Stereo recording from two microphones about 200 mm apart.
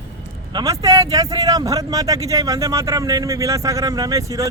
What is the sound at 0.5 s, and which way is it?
Speech, 15° right (ahead or behind).